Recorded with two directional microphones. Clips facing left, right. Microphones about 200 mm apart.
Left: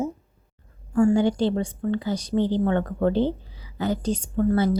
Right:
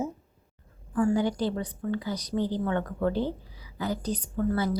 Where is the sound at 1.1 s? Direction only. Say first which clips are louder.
Left 5 dB; 25° left (ahead or behind).